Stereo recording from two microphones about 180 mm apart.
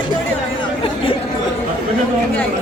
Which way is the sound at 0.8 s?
30° left (ahead or behind).